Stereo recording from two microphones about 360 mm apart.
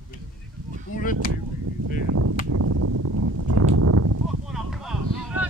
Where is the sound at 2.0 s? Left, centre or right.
Right.